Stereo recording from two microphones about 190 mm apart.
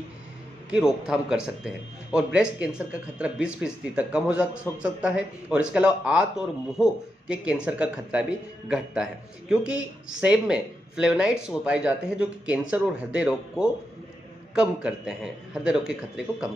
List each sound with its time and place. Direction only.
0.7 s speech: 5° right (ahead or behind)